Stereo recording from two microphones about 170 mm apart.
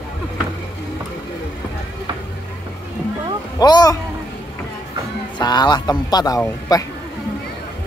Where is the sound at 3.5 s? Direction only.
25° left (ahead or behind).